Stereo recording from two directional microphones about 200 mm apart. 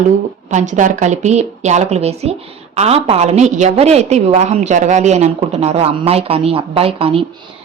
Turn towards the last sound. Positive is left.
turn(degrees=-30)  # may be behind; listen again after turning